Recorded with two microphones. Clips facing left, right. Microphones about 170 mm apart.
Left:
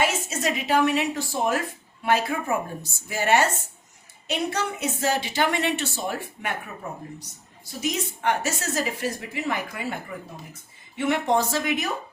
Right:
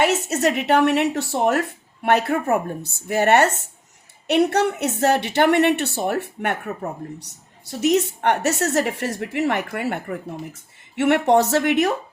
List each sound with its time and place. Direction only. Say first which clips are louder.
0.0 s a woman's voice: right 6 dB; 70° right (ahead or behind)